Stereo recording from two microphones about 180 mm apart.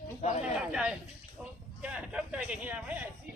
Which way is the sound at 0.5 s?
5° right (ahead or behind).